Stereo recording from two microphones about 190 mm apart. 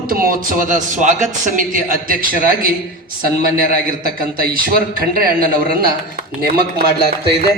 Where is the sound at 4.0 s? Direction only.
50° right (ahead or behind).